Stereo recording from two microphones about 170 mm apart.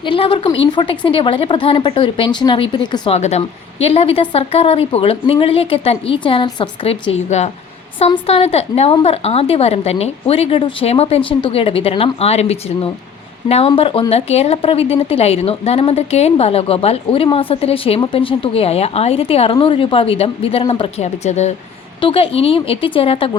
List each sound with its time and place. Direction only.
0.0 s a woman's voice: 30° left (ahead or behind)
3.2 s a woman's voice: 40° left (ahead or behind)